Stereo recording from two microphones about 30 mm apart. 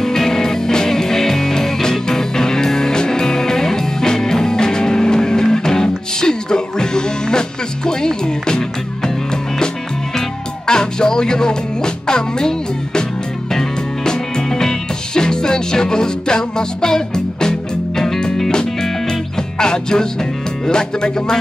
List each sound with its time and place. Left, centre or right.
0.0 s music: centre
10.7 s music: left